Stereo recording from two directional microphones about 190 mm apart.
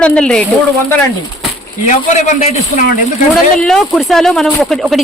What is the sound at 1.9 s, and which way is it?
A man's voice, 40° left (ahead or behind).